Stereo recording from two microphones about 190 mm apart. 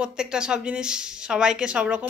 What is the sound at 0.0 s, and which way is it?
A woman's voice, 5° right (ahead or behind).